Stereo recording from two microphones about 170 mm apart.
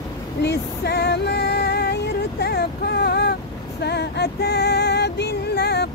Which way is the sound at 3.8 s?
75° left (ahead or behind).